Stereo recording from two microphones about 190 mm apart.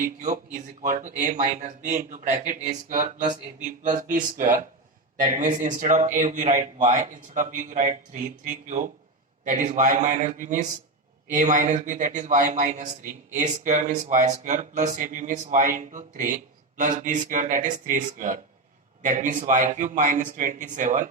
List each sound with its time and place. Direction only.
0.2 s speech: 40° right (ahead or behind)
4.1 s speech: 45° right (ahead or behind)